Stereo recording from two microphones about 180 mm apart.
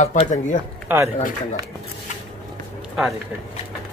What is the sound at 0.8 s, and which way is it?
Speech, 15° right (ahead or behind).